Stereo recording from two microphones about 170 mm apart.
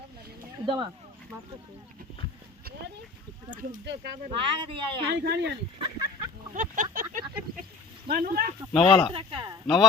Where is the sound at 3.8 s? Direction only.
90° right.